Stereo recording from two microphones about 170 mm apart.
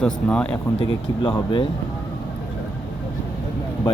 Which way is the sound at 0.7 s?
25° left (ahead or behind).